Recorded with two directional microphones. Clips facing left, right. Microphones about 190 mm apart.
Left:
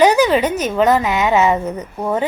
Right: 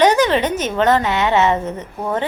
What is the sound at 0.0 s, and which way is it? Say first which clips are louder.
A woman's voice: left 2 dB; 5° left (ahead or behind).